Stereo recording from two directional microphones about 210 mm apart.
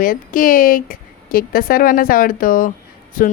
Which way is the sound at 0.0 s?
40° left (ahead or behind).